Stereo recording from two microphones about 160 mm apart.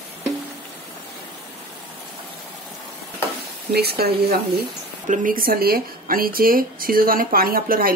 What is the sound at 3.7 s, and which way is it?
Speech, 80° right.